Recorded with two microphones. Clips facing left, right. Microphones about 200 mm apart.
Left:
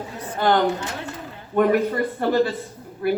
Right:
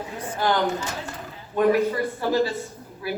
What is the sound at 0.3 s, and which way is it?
A woman's voice, 55° left (ahead or behind).